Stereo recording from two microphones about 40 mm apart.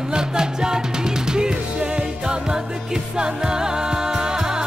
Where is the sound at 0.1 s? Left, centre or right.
Centre.